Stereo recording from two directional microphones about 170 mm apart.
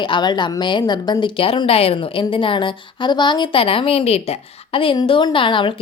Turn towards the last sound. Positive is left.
turn(degrees=30)  # may be behind; listen again after turning